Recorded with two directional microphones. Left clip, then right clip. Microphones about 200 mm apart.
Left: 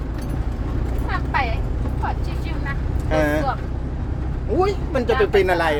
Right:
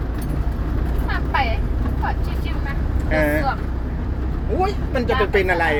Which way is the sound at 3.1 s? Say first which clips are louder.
Even; 25° left (ahead or behind).